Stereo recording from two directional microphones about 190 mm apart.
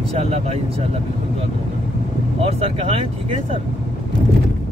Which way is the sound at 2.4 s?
30° right (ahead or behind).